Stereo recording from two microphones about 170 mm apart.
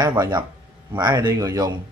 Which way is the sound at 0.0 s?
25° right (ahead or behind).